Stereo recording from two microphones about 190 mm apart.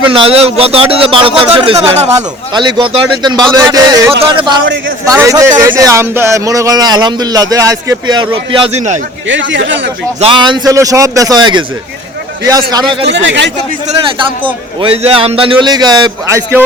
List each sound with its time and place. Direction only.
0.1 s a man's voice: 30° right (ahead or behind)
9.2 s speech: 75° right (ahead or behind)
10.2 s a man's voice: 25° right (ahead or behind)
13.1 s speech: 65° right (ahead or behind)
13.8 s a man's voice: 25° right (ahead or behind)